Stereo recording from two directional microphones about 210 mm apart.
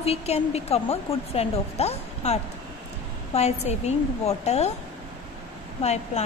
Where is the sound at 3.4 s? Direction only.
30° left (ahead or behind).